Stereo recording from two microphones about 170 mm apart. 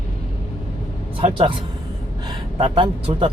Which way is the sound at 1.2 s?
30° right (ahead or behind).